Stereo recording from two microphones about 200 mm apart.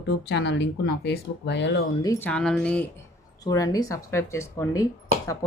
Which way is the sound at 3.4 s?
20° left (ahead or behind).